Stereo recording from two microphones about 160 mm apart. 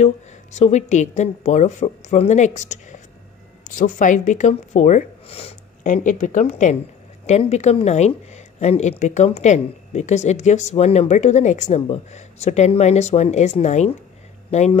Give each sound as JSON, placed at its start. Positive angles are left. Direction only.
{"t": 0.0, "sound": "speech", "side_deg": 45}